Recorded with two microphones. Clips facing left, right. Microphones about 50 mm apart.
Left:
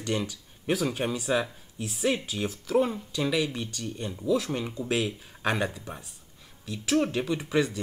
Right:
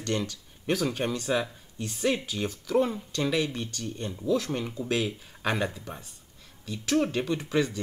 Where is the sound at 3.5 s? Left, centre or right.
Centre.